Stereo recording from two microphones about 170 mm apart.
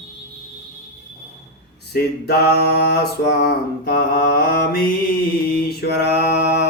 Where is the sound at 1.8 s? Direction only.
70° left (ahead or behind).